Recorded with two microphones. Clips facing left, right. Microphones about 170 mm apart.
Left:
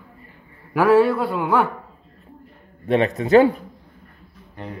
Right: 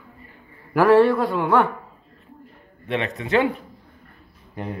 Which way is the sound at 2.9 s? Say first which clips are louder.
Left 7 dB; 40° left (ahead or behind).